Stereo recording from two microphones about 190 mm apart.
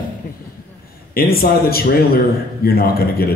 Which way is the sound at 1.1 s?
55° left (ahead or behind).